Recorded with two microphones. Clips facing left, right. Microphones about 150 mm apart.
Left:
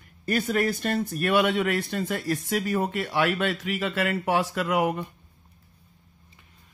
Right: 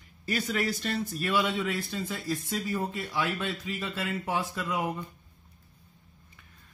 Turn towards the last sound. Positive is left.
turn(degrees=75)  # may be behind; listen again after turning